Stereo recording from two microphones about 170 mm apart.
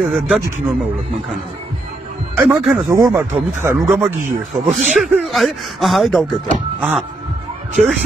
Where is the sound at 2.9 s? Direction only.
20° right (ahead or behind).